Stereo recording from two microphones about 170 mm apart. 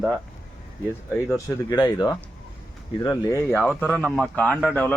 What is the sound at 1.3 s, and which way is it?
Speech, 25° left (ahead or behind).